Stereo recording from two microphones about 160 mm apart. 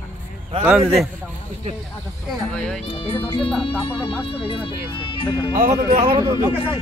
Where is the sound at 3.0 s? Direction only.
35° left (ahead or behind).